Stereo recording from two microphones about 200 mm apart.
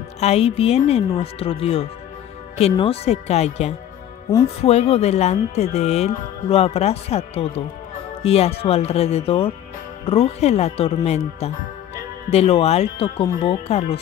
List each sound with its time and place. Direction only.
0.2 s speech: 30° left (ahead or behind)